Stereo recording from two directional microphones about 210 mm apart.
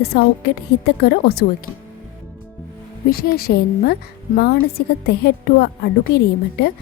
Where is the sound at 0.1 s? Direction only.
50° left (ahead or behind).